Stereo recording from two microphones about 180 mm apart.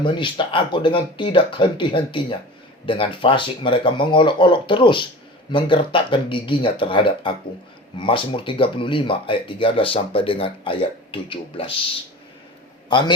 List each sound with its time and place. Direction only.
0.0 s speech: 25° left (ahead or behind)
12.9 s speech: 25° left (ahead or behind)